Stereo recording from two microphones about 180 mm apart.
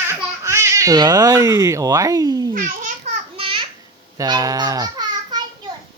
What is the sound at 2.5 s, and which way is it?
Babbling, 45° right (ahead or behind).